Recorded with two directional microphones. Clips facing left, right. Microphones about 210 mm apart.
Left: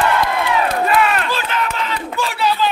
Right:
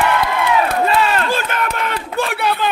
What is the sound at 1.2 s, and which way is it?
Speech, 50° right (ahead or behind).